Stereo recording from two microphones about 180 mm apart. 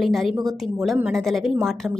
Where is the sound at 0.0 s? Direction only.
Centre (ahead or behind).